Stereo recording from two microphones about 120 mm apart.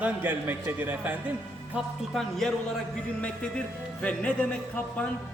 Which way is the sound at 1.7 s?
Centre (ahead or behind).